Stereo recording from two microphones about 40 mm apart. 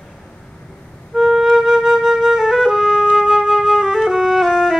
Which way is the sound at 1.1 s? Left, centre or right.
Centre.